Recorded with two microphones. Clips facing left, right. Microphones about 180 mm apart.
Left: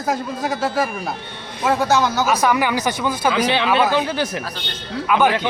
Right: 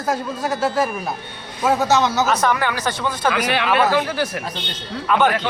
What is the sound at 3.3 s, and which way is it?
Speech, 25° left (ahead or behind).